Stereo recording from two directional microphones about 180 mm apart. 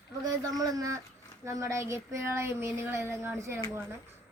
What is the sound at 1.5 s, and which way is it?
Child singing, 15° right (ahead or behind).